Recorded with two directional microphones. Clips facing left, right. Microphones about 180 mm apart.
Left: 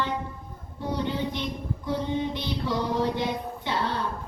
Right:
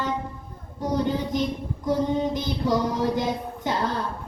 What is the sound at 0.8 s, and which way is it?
Speech, 40° right (ahead or behind).